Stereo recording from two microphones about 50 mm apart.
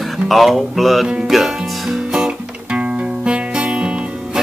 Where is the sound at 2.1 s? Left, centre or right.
Centre.